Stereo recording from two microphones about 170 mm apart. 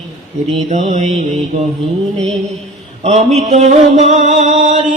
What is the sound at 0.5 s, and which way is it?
Mantra, 45° right (ahead or behind).